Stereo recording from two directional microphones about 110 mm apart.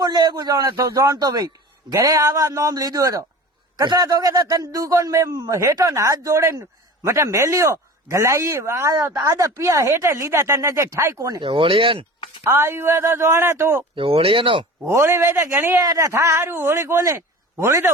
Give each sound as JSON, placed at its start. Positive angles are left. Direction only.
{"t": 0.0, "sound": "a man's voice", "side_deg": -35}
{"t": 11.4, "sound": "speech", "side_deg": -55}
{"t": 12.4, "sound": "a man's voice", "side_deg": -20}
{"t": 13.9, "sound": "speech", "side_deg": -60}
{"t": 14.8, "sound": "a man's voice", "side_deg": -25}